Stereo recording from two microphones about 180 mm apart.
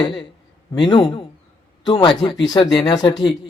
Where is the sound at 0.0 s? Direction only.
30° left (ahead or behind).